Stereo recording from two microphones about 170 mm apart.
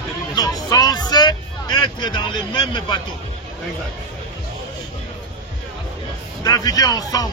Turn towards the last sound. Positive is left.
turn(degrees=20)  # may be behind; listen again after turning